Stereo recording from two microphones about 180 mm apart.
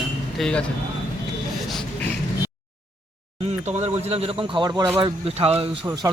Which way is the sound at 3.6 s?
40° right (ahead or behind).